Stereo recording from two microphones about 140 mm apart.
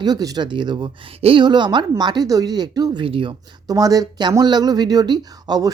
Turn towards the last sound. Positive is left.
turn(degrees=-30)  # may be behind; listen again after turning